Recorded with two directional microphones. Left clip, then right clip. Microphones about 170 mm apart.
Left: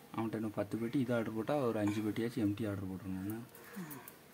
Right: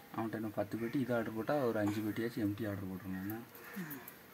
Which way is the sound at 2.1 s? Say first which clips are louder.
Left 1 dB; 30° left (ahead or behind).